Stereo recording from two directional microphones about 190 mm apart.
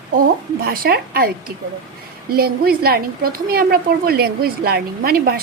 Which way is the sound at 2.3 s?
50° right (ahead or behind).